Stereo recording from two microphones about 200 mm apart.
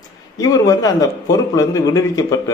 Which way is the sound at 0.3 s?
15° left (ahead or behind).